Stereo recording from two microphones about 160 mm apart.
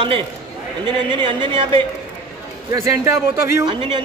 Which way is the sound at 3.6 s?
30° right (ahead or behind).